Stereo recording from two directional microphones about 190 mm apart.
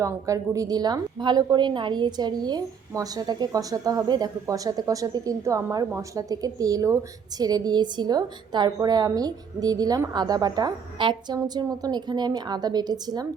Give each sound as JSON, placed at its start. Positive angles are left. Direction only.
{"t": 0.0, "sound": "a woman's voice", "side_deg": -15}